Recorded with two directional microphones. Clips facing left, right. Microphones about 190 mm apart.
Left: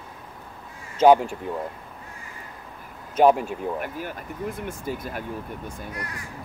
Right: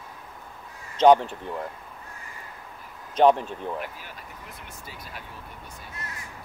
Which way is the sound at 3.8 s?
50° left (ahead or behind).